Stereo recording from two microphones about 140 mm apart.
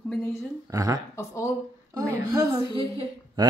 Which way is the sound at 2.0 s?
25° right (ahead or behind).